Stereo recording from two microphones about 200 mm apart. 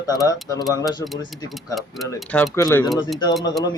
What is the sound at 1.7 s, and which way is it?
Speech, centre (ahead or behind).